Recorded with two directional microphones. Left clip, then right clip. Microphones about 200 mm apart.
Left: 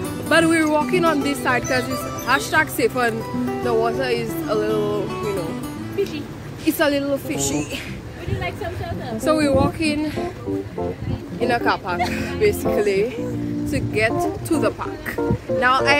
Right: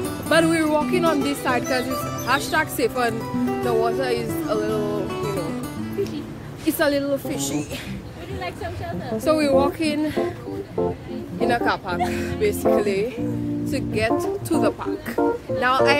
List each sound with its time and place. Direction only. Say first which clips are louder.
0.0 s speech: left 1 dB; 5° right (ahead or behind)
6.8 s speech: left 1 dB; 5° right (ahead or behind)
9.2 s speech: even; 15° right (ahead or behind); by 10.2 s 30° right (ahead or behind)
11.3 s speech: left 1 dB; centre (ahead or behind)